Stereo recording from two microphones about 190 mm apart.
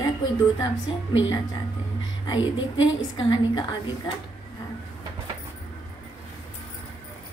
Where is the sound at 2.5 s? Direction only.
90° left.